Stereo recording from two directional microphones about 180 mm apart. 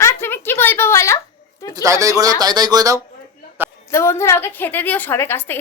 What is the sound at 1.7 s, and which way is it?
Speech, 20° right (ahead or behind).